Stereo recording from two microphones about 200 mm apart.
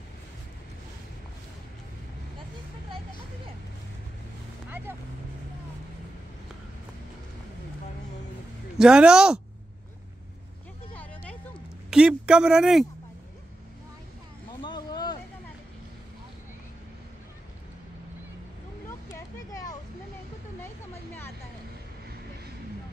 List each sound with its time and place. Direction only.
4.6 s vehicle: 10° right (ahead or behind)
8.7 s speech: 5° right (ahead or behind)
11.9 s speech: 5° right (ahead or behind)
14.5 s vehicle: 20° left (ahead or behind)
19.1 s a sound: 15° left (ahead or behind)